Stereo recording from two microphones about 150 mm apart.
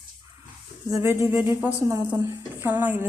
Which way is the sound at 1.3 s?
10° right (ahead or behind).